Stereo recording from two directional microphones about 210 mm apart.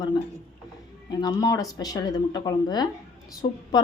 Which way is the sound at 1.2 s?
15° left (ahead or behind).